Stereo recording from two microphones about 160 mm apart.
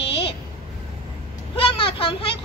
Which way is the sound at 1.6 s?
35° left (ahead or behind).